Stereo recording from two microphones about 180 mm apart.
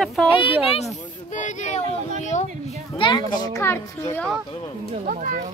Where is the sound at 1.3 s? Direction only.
45° left (ahead or behind).